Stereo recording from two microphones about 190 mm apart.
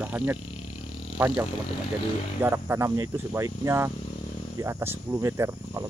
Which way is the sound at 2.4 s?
15° right (ahead or behind).